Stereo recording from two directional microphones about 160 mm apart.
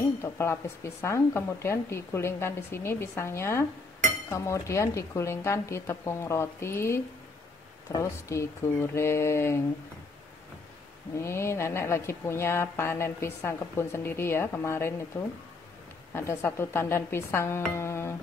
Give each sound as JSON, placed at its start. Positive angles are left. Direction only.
{"t": 0.0, "sound": "speech", "side_deg": 15}
{"t": 11.1, "sound": "speech", "side_deg": 15}
{"t": 16.1, "sound": "speech", "side_deg": 15}
{"t": 17.7, "sound": "music", "side_deg": 15}